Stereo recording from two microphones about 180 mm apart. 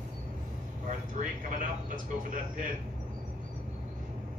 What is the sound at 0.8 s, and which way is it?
A man's voice, 45° right (ahead or behind).